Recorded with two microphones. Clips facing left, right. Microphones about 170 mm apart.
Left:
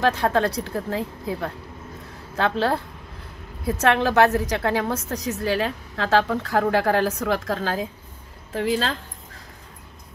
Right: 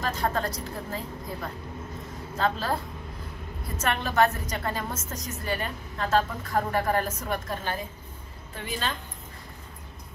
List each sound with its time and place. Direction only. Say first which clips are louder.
0.0 s a woman's voice: left 8 dB; 70° left (ahead or behind); by 8.9 s 90° left